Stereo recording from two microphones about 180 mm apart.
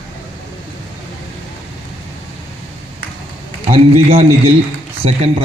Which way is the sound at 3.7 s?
35° right (ahead or behind).